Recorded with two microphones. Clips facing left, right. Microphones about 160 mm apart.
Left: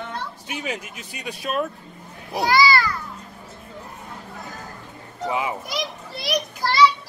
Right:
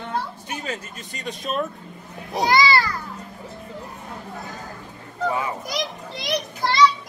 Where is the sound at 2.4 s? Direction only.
25° right (ahead or behind).